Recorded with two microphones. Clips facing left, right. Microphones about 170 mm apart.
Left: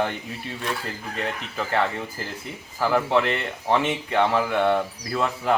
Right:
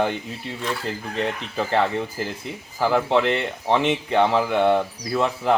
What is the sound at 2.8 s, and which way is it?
A man's voice, 20° right (ahead or behind).